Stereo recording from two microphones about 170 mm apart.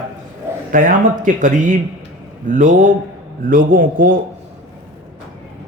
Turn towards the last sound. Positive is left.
turn(degrees=-55)  # may be behind; listen again after turning